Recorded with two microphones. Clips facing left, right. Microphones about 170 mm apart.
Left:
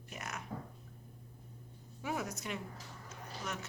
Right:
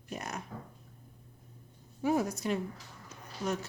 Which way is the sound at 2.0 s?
35° right (ahead or behind).